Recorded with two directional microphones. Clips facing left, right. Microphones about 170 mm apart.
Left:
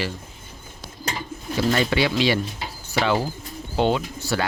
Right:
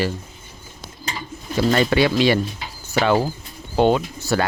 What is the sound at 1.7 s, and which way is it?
Speech, 50° right (ahead or behind).